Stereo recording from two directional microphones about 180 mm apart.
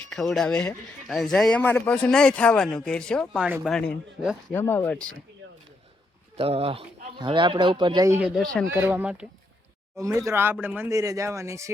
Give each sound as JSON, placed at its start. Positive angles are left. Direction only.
{"t": 0.1, "sound": "a man's voice", "side_deg": 0}
{"t": 4.5, "sound": "speech", "side_deg": 10}
{"t": 5.4, "sound": "a sound", "side_deg": -90}
{"t": 6.3, "sound": "speech", "side_deg": -35}
{"t": 8.2, "sound": "a man's voice", "side_deg": 5}
{"t": 8.7, "sound": "speech", "side_deg": -10}
{"t": 10.0, "sound": "speech", "side_deg": -20}